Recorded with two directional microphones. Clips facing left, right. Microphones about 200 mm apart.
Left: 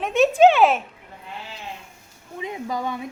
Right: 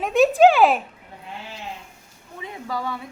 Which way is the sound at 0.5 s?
Centre (ahead or behind).